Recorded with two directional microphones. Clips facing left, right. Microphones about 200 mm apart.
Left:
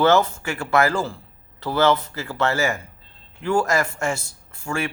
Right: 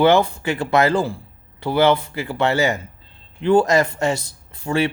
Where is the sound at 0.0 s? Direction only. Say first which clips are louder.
Right 2 dB; 15° right (ahead or behind).